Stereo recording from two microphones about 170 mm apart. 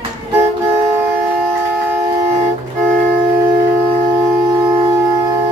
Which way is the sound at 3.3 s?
20° right (ahead or behind).